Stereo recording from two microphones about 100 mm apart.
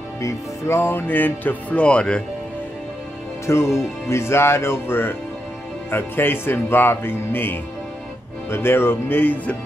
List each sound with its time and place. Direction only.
0.2 s speech: 25° left (ahead or behind); by 2.2 s 10° left (ahead or behind)
3.4 s speech: 30° left (ahead or behind)